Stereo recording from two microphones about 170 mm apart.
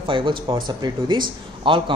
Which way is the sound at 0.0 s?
30° right (ahead or behind).